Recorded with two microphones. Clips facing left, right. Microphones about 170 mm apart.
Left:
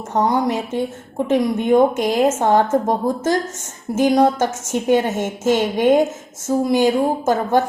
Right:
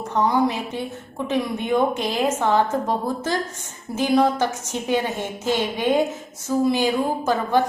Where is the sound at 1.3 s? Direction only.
45° left (ahead or behind).